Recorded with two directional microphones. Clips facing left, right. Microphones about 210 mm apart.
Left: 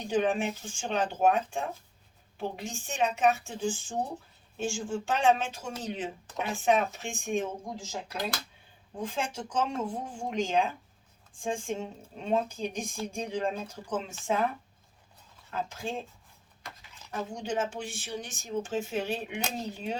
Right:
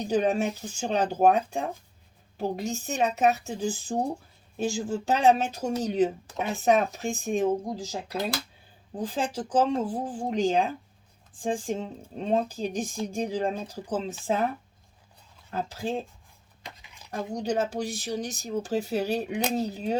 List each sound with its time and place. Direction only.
0.0 s speech: 40° right (ahead or behind)
9.0 s speech: 35° right (ahead or behind)
15.4 s speech: 35° right (ahead or behind)
16.6 s a sound: 15° right (ahead or behind)
17.3 s speech: 40° right (ahead or behind)